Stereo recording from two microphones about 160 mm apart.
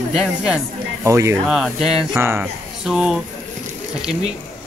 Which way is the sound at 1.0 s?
20° right (ahead or behind).